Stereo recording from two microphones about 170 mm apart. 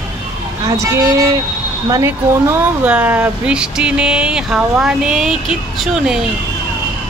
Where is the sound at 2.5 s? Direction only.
10° right (ahead or behind).